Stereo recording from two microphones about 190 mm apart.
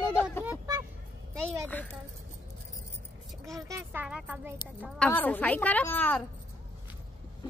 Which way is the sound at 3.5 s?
15° right (ahead or behind).